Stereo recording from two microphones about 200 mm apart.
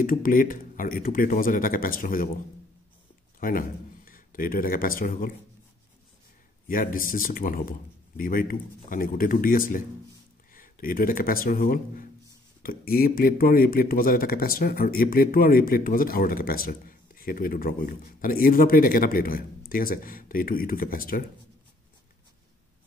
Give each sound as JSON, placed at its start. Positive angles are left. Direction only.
{"t": 0.0, "sound": "speech", "side_deg": 45}
{"t": 3.3, "sound": "speech", "side_deg": 45}
{"t": 6.7, "sound": "speech", "side_deg": 45}